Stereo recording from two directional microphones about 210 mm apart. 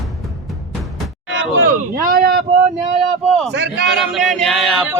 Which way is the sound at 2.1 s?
45° right (ahead or behind).